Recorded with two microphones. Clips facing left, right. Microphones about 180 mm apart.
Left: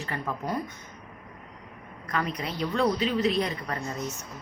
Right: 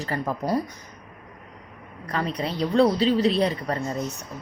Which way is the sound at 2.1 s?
35° right (ahead or behind).